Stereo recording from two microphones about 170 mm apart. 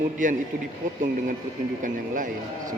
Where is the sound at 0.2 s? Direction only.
50° right (ahead or behind).